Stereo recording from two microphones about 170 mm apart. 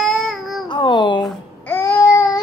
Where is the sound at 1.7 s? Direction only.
15° left (ahead or behind).